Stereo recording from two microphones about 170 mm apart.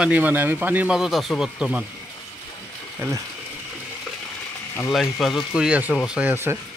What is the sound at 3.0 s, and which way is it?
Speech, 15° right (ahead or behind).